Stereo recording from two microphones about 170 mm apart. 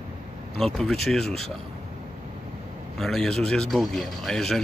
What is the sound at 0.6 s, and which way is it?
Speech, 5° left (ahead or behind).